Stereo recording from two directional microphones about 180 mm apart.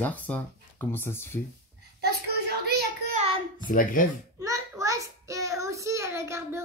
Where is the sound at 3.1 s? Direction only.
30° right (ahead or behind).